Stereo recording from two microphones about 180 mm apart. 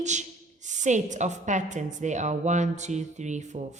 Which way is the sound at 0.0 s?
40° right (ahead or behind).